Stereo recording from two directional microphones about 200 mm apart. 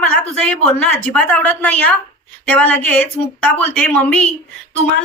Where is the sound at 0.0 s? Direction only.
5° left (ahead or behind).